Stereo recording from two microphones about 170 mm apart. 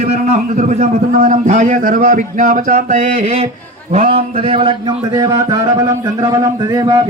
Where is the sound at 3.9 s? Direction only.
35° right (ahead or behind).